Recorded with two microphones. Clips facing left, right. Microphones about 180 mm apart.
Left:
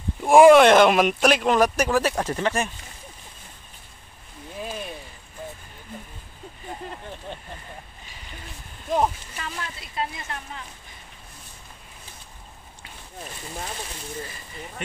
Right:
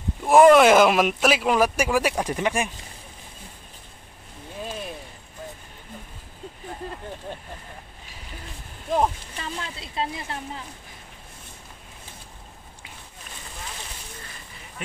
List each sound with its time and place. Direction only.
0.2 s speech: 5° left (ahead or behind); by 2.7 s 15° right (ahead or behind)
9.4 s speech: 25° right (ahead or behind)